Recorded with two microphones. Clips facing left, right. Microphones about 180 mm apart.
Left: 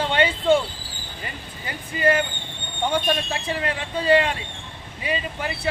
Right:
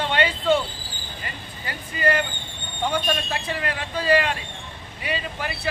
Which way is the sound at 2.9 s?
25° left (ahead or behind).